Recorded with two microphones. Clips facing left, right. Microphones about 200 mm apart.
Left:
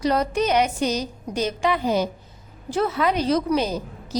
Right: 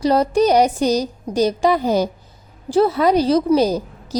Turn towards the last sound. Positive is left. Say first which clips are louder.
# right 7 dB
turn(degrees=-35)  # may be behind; listen again after turning